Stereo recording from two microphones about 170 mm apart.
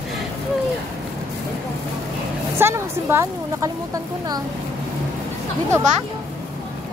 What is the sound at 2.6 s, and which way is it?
A woman's voice, 15° right (ahead or behind).